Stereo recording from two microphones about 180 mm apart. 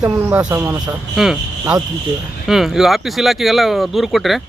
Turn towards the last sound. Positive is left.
turn(degrees=0)  # may be behind; listen again after turning